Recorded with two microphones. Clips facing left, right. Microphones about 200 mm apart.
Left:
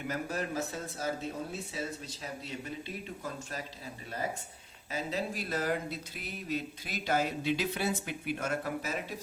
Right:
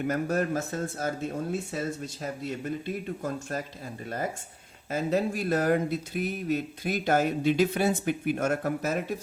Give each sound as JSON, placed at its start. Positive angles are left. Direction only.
{"t": 0.1, "sound": "speech", "side_deg": -50}
{"t": 4.9, "sound": "speech", "side_deg": -50}